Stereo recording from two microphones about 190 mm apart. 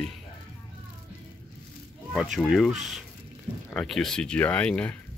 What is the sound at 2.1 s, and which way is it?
Speech, centre (ahead or behind).